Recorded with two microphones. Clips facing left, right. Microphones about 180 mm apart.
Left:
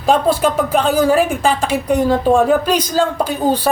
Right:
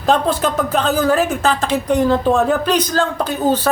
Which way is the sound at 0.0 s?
10° left (ahead or behind).